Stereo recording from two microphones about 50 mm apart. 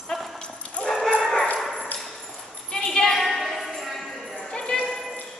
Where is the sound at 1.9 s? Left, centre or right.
Centre.